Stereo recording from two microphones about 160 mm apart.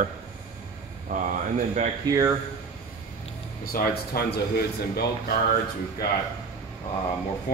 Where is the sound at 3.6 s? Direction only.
65° left (ahead or behind).